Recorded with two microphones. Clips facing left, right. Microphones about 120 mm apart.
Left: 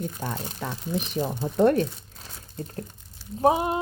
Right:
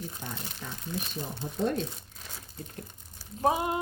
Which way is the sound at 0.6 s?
90° left.